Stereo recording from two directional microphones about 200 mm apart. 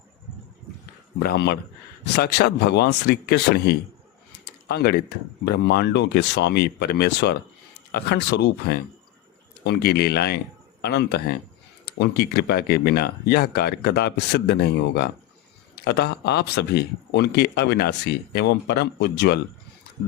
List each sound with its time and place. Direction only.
1.2 s speech: 55° left (ahead or behind)